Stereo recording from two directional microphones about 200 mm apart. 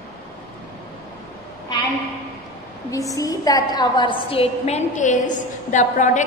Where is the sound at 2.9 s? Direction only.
15° left (ahead or behind).